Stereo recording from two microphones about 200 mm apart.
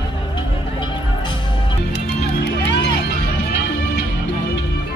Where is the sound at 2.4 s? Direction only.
55° left (ahead or behind).